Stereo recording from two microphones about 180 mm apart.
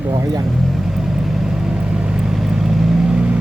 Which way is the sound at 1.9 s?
5° right (ahead or behind).